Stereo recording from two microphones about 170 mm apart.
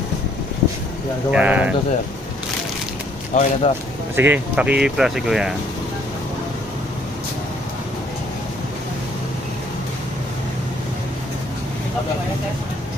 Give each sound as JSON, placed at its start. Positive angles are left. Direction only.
{"t": 1.3, "sound": "speech", "side_deg": -10}
{"t": 3.3, "sound": "a man's voice", "side_deg": 40}
{"t": 4.1, "sound": "speech", "side_deg": -10}